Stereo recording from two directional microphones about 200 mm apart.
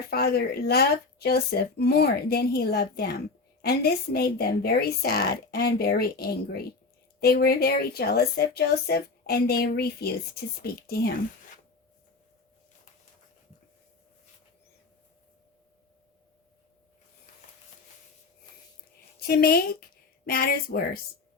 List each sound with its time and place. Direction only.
0.1 s a woman's voice: 50° left (ahead or behind)
19.3 s a woman's voice: 50° left (ahead or behind)